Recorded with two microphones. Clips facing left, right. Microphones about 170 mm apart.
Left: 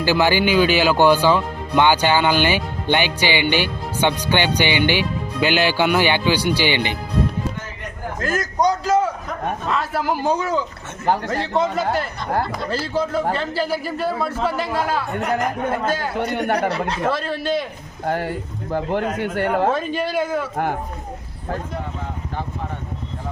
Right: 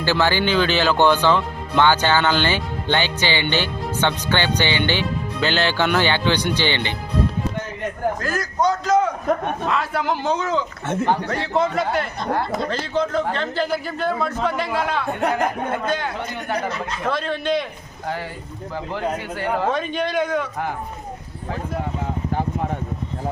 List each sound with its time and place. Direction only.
0.0 s speech: 15° left (ahead or behind)
8.2 s a man's voice: 20° left (ahead or behind); by 16.0 s 5° left (ahead or behind)
16.1 s speech: 60° left (ahead or behind)
17.1 s a man's voice: 5° left (ahead or behind)
18.0 s speech: 50° left (ahead or behind)
19.7 s a man's voice: 5° left (ahead or behind)